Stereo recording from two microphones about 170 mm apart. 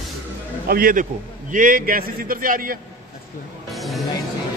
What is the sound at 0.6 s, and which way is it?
A man's voice, 55° right (ahead or behind).